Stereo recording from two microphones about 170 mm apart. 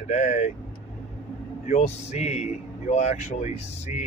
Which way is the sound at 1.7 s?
40° left (ahead or behind).